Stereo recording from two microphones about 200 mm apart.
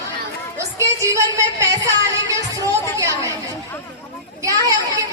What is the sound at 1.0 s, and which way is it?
A woman's voice, 15° right (ahead or behind).